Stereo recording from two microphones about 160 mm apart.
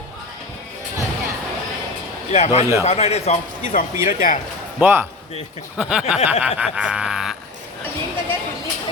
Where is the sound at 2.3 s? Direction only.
45° left (ahead or behind).